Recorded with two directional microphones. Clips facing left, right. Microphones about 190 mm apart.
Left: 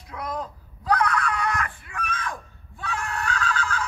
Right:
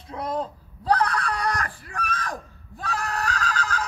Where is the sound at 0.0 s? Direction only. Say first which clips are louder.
Right 3 dB; 30° right (ahead or behind).